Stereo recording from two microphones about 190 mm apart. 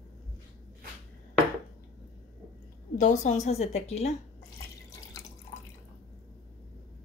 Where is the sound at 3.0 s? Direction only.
40° left (ahead or behind).